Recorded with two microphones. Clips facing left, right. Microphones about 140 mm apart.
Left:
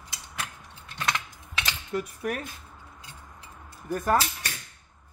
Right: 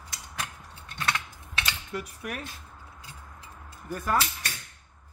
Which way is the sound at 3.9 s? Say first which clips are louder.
Left 4 dB; 45° left (ahead or behind).